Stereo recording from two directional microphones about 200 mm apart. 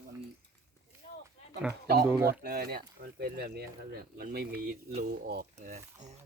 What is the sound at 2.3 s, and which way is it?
Speech, 50° right (ahead or behind).